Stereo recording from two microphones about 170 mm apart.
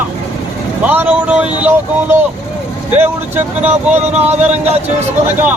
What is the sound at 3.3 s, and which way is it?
Speech, 10° right (ahead or behind).